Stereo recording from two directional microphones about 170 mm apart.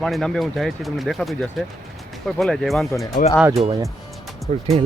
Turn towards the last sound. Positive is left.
turn(degrees=-40)  # may be behind; listen again after turning